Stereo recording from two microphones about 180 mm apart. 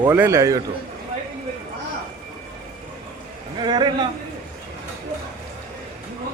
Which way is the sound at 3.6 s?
25° right (ahead or behind).